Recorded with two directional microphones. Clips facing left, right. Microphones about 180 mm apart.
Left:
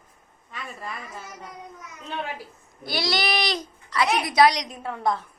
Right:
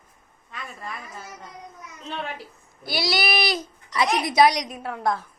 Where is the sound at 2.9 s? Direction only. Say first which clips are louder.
Right 1 dB; 10° right (ahead or behind).